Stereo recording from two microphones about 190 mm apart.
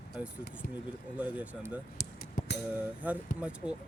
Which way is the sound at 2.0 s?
60° left (ahead or behind).